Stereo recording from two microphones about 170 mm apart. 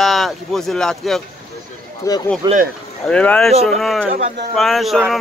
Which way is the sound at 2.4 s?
20° right (ahead or behind).